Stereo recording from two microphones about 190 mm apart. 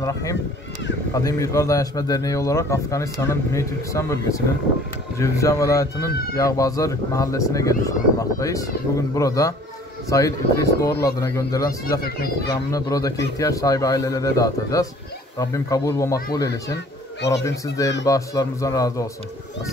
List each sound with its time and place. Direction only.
0.0 s speech: 15° left (ahead or behind)